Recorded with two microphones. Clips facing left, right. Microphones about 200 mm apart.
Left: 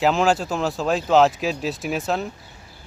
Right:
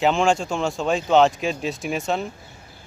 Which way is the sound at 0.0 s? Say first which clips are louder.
Even; centre (ahead or behind).